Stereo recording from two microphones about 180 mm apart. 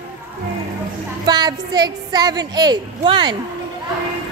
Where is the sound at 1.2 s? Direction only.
25° right (ahead or behind).